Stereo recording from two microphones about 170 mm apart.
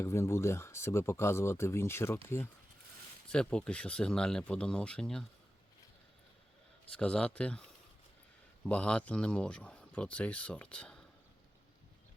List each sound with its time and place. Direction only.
0.0 s speech: 15° left (ahead or behind)
3.2 s speech: 5° left (ahead or behind)
6.9 s speech: 5° left (ahead or behind)